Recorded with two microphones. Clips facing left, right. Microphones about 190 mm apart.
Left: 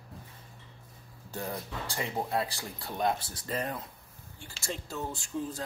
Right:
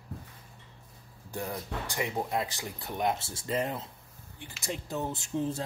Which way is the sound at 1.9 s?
15° right (ahead or behind).